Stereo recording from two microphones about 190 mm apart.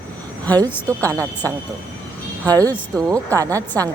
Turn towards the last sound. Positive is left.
turn(degrees=-20)  # may be behind; listen again after turning